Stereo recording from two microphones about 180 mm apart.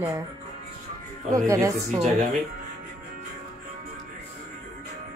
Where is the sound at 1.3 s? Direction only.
20° right (ahead or behind).